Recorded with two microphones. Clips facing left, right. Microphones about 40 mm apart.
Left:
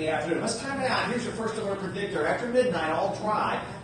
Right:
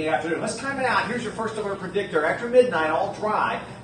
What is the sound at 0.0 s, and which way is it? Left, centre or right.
A man's voice, right.